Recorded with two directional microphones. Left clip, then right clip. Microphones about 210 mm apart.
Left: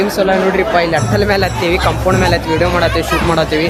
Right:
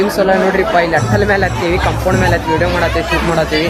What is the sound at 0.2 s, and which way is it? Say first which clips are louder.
Speech: even; centre (ahead or behind).